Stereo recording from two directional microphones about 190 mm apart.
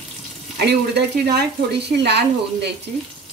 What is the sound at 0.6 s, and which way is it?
Speech, 60° right (ahead or behind).